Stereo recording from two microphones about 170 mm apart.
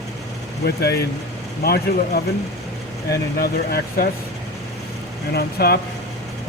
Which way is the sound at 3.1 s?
65° left (ahead or behind).